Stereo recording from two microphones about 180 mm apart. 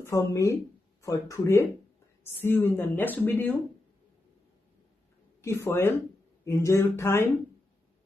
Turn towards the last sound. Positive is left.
turn(degrees=15)  # may be behind; listen again after turning